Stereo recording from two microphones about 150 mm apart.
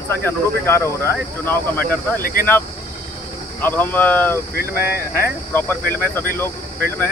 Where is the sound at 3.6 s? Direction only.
15° left (ahead or behind).